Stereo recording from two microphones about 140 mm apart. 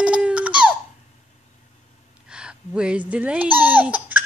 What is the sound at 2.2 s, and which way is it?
Speech, 5° right (ahead or behind).